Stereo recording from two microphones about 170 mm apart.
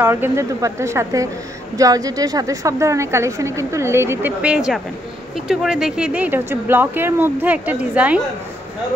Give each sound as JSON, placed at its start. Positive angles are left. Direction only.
{"t": 0.0, "sound": "a woman's voice", "side_deg": -15}